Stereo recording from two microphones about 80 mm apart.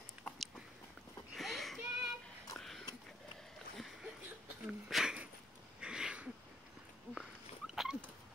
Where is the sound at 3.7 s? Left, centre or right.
Centre.